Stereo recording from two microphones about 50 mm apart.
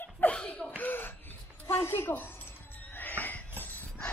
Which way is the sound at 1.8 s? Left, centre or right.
Left.